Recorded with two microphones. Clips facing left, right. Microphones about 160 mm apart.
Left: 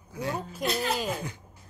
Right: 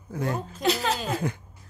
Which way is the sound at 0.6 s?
75° right (ahead or behind).